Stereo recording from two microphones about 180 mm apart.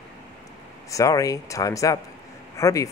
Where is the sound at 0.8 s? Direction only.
20° left (ahead or behind).